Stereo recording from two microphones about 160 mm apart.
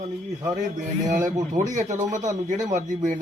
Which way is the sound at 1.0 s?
55° right (ahead or behind).